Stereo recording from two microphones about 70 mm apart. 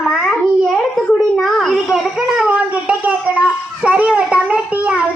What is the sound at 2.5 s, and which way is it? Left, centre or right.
A child's voice, centre.